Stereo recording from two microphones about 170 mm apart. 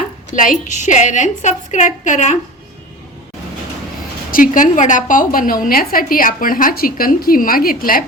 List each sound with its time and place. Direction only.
0.3 s a woman's voice: 45° left (ahead or behind)
4.3 s a woman's voice: 55° left (ahead or behind)